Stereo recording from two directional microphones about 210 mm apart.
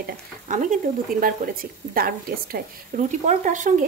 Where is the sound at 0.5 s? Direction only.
35° right (ahead or behind).